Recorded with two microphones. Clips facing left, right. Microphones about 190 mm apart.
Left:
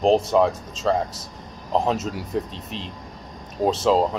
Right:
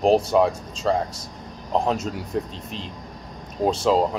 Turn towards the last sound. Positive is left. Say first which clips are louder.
# left 1 dB
turn(degrees=0)  # may be behind; listen again after turning